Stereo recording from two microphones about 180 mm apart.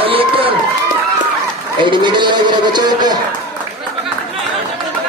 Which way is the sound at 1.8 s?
25° right (ahead or behind).